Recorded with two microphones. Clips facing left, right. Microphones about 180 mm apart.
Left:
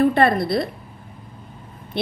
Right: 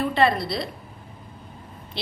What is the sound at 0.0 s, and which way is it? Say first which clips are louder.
Speech: left 5 dB; 50° left (ahead or behind).